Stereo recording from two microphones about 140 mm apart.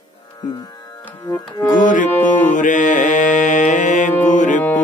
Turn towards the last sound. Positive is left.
turn(degrees=60)  # may be behind; listen again after turning